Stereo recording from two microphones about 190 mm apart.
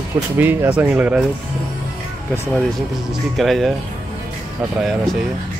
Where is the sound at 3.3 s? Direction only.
Centre (ahead or behind).